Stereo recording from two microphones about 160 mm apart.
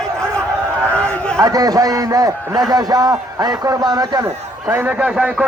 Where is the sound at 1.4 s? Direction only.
20° right (ahead or behind).